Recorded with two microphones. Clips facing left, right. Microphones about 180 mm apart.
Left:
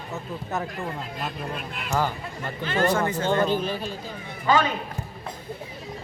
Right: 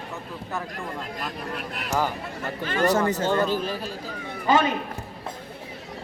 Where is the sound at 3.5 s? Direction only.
5° right (ahead or behind).